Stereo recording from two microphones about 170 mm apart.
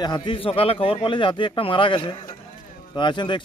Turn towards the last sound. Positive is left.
turn(degrees=30)  # may be behind; listen again after turning